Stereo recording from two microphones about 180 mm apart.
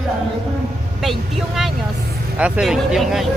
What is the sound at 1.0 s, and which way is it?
Speech, centre (ahead or behind).